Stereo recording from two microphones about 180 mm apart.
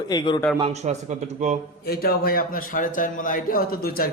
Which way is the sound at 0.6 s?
40° right (ahead or behind).